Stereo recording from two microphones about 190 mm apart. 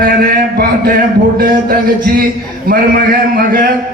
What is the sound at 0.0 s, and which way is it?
A man's voice, 50° right (ahead or behind).